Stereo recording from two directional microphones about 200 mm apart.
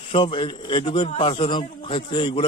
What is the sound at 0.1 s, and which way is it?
A man's voice, 25° left (ahead or behind).